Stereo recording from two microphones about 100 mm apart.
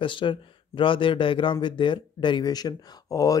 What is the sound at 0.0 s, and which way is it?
Speech, 55° left (ahead or behind).